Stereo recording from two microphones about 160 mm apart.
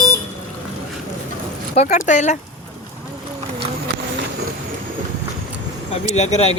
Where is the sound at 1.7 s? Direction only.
45° left (ahead or behind).